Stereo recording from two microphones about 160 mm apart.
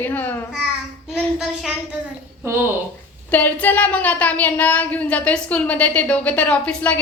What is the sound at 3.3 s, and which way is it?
A woman's voice, 10° left (ahead or behind).